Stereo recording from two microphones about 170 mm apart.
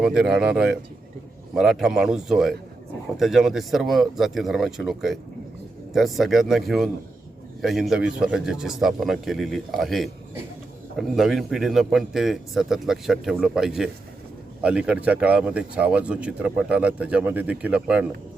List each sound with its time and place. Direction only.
0.0 s a man's voice: 5° right (ahead or behind)